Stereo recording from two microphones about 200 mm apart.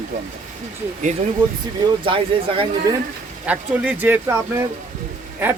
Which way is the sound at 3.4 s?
5° right (ahead or behind).